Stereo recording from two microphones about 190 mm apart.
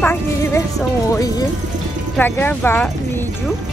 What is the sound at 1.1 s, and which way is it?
Speech, 20° left (ahead or behind).